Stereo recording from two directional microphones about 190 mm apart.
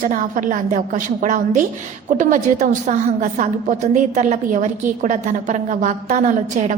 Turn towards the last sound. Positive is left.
turn(degrees=-40)  # may be behind; listen again after turning